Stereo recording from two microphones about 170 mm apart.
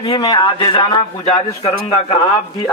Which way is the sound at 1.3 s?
35° left (ahead or behind).